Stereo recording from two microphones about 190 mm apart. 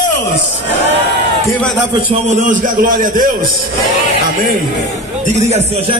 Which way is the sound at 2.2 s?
40° right (ahead or behind).